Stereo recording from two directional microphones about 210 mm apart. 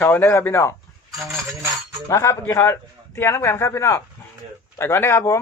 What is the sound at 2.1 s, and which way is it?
Speech, 15° left (ahead or behind).